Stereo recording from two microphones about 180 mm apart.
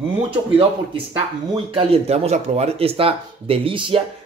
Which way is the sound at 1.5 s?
30° right (ahead or behind).